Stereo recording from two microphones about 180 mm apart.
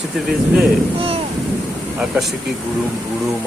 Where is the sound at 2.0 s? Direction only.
Centre (ahead or behind).